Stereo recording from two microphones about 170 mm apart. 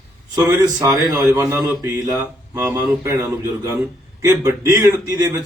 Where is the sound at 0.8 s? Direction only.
20° right (ahead or behind).